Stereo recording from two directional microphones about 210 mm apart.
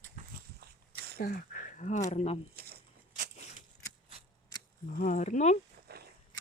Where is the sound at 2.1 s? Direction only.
30° left (ahead or behind).